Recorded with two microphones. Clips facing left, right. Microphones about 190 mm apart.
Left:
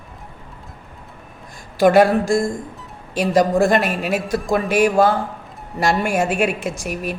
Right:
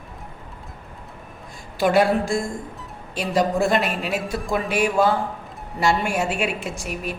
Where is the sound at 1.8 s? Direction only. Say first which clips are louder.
Left 6 dB; 45° left (ahead or behind).